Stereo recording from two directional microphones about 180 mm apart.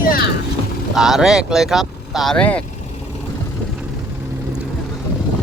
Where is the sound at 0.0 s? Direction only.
55° left (ahead or behind).